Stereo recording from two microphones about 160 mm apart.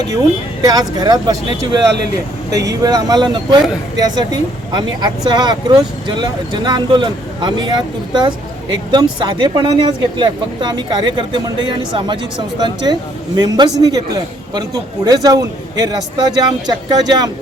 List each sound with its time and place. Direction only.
0.6 s speech: 25° right (ahead or behind)